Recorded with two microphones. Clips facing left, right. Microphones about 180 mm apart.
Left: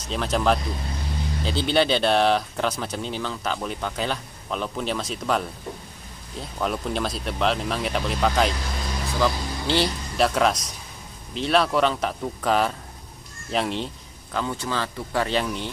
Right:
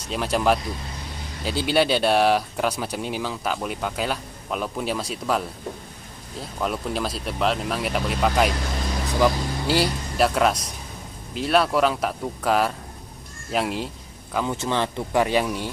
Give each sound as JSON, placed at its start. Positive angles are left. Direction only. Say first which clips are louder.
{"t": 0.1, "sound": "speech", "louder": "right 1 dB", "side_deg": -5}
{"t": 6.6, "sound": "speech", "louder": "even", "side_deg": 0}
{"t": 14.3, "sound": "speech", "louder": "right 3 dB", "side_deg": -20}